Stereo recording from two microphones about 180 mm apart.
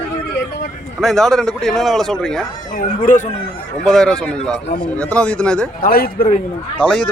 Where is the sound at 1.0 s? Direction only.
Centre (ahead or behind).